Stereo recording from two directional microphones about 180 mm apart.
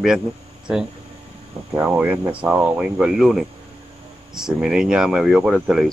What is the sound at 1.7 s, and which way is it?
Speech, 10° right (ahead or behind).